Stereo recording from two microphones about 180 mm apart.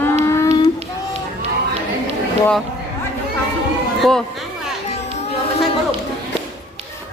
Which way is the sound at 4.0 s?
5° left (ahead or behind).